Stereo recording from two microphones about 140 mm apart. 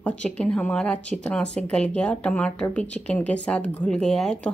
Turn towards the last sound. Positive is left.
turn(degrees=5)  # may be behind; listen again after turning